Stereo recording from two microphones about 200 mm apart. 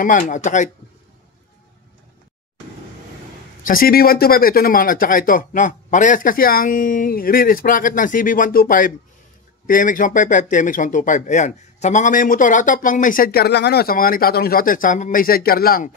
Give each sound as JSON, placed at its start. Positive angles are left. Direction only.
{"t": 0.0, "sound": "speech", "side_deg": 40}
{"t": 3.6, "sound": "speech", "side_deg": 45}